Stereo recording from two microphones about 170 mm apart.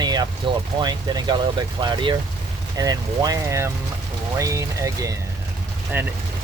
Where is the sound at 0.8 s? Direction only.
25° right (ahead or behind).